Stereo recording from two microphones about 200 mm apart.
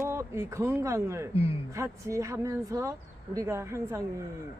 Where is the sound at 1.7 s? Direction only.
15° right (ahead or behind).